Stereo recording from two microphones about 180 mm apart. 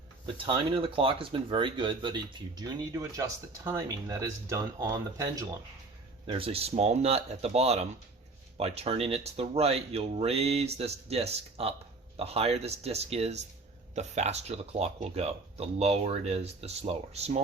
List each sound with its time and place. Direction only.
0.4 s speech: 30° right (ahead or behind)
6.2 s speech: 30° right (ahead or behind)